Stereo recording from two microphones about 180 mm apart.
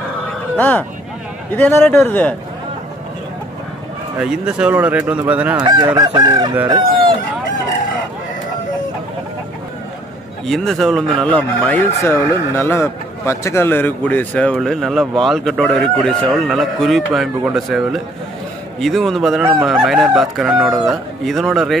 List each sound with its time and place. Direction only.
0.6 s a man's voice: 10° left (ahead or behind)
4.2 s speech: 5° right (ahead or behind)
5.6 s chicken: 25° right (ahead or behind)
10.4 s speech: centre (ahead or behind)